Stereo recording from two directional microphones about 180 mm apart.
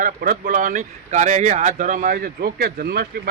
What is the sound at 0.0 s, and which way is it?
Speech, 50° right (ahead or behind).